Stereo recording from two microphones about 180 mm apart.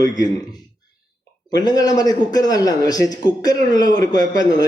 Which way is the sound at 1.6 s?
20° left (ahead or behind).